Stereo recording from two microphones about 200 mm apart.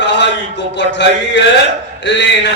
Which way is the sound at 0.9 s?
60° left (ahead or behind).